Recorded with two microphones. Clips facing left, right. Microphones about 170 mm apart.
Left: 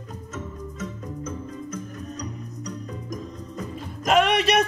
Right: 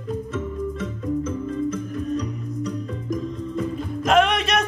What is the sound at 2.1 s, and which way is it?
Music, 40° left (ahead or behind).